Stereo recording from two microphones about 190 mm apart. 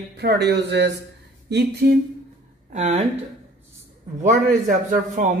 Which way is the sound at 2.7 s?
35° right (ahead or behind).